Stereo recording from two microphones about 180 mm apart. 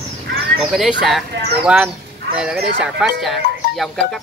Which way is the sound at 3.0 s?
Centre (ahead or behind).